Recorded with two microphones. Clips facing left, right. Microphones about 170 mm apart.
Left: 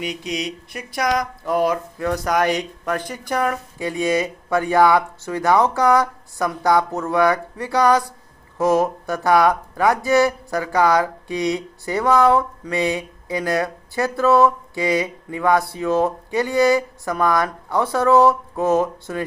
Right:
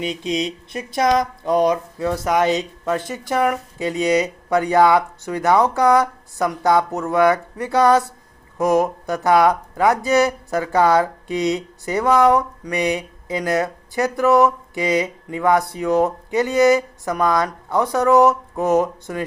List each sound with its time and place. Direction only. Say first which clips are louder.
0.0 s speech: right 3 dB; 25° right (ahead or behind)